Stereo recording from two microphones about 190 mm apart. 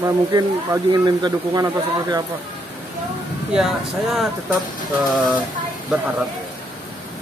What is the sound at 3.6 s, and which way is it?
Speech, centre (ahead or behind).